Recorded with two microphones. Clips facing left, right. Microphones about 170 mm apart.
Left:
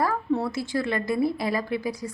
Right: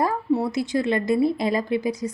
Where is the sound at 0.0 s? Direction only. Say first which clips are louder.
Right 3 dB; 15° right (ahead or behind).